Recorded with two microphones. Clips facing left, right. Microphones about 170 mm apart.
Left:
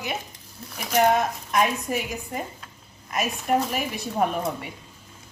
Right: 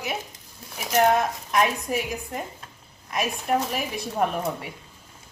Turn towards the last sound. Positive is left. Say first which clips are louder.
# left 1 dB
turn(degrees=0)  # may be behind; listen again after turning